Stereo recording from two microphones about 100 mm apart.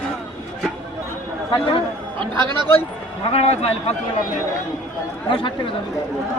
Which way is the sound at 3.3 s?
90° left.